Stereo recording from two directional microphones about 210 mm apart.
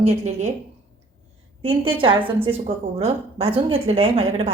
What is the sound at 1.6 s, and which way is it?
A woman's voice, 25° right (ahead or behind).